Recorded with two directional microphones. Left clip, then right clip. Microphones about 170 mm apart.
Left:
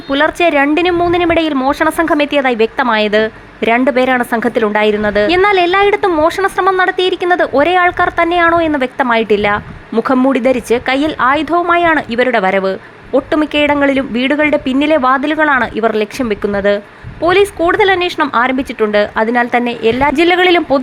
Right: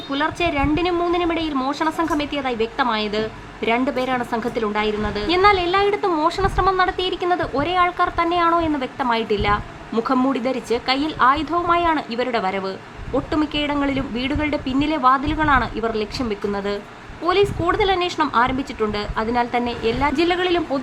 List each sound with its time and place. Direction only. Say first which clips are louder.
0.1 s a woman's voice: left 10 dB; 35° left (ahead or behind)